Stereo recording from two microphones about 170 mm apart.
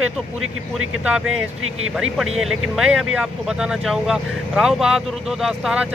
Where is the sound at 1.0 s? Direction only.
5° right (ahead or behind).